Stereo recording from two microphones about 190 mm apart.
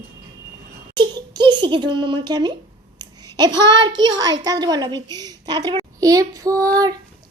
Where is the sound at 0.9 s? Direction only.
25° right (ahead or behind).